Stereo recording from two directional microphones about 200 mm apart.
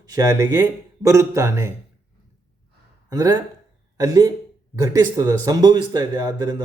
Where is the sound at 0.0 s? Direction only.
15° right (ahead or behind).